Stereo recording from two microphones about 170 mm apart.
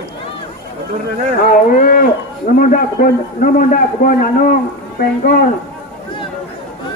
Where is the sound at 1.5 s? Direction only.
55° left (ahead or behind).